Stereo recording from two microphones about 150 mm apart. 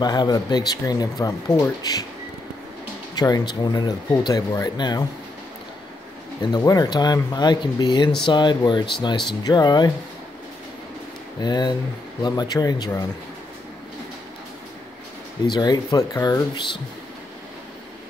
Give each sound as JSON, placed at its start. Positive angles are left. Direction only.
{"t": 0.0, "sound": "speech", "side_deg": 25}
{"t": 3.2, "sound": "speech", "side_deg": 25}
{"t": 6.4, "sound": "speech", "side_deg": 25}
{"t": 11.4, "sound": "speech", "side_deg": 25}
{"t": 15.4, "sound": "speech", "side_deg": 30}